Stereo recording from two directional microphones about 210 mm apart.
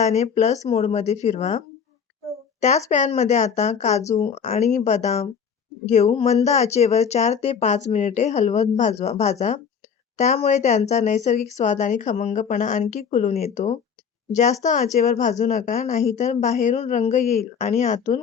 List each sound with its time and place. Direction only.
0.0 s speech: 30° left (ahead or behind)